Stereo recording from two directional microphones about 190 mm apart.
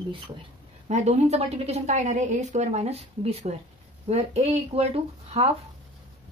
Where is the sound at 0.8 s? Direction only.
35° right (ahead or behind).